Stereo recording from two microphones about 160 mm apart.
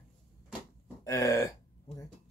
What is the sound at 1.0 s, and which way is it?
Speech, 20° left (ahead or behind).